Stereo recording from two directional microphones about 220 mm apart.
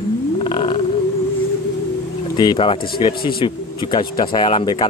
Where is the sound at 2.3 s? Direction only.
20° left (ahead or behind).